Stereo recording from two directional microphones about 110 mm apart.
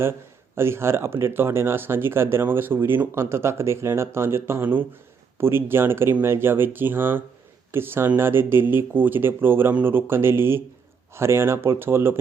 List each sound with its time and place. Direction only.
0.0 s speech: 20° right (ahead or behind)